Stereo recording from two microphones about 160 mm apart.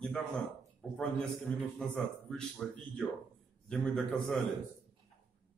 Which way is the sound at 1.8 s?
5° left (ahead or behind).